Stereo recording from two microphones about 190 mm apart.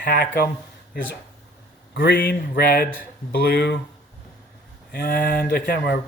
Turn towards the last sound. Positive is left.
turn(degrees=55)  # may be behind; listen again after turning